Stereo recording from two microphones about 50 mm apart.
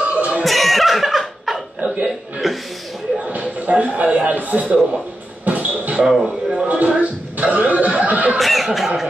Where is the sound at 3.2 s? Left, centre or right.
Right.